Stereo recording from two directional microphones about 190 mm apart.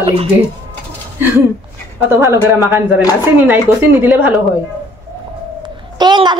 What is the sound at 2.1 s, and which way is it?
A woman's voice, 15° right (ahead or behind).